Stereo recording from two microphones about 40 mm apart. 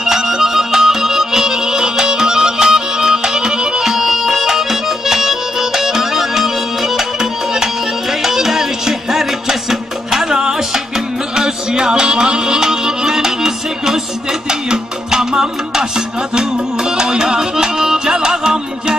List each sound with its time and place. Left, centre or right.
0.0 s music: centre
3.8 s music: centre